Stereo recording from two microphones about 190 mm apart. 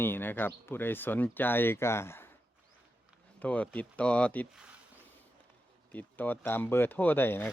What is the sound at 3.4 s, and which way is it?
Speech, 5° left (ahead or behind).